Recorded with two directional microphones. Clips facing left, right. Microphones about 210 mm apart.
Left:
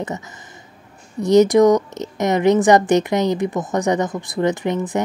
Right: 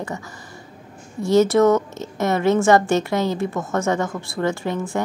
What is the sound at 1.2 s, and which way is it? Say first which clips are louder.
A woman's voice: left 3 dB; 15° left (ahead or behind).